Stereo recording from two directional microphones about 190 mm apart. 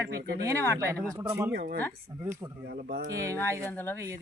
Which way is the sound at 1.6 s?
55° right (ahead or behind).